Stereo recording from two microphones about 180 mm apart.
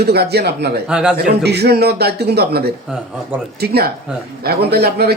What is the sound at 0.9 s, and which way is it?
Speech, 5° right (ahead or behind).